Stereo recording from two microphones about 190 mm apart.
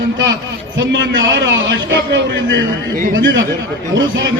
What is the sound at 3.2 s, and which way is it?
A man's voice, 75° right (ahead or behind).